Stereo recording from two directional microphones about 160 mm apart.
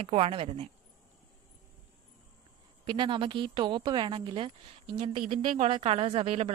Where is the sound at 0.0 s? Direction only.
35° right (ahead or behind).